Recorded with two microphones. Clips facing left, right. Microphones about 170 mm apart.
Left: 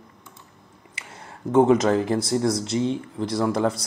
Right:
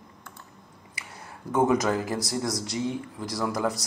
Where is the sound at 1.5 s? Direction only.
25° left (ahead or behind).